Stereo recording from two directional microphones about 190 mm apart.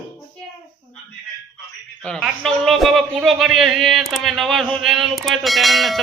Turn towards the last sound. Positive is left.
turn(degrees=0)  # may be behind; listen again after turning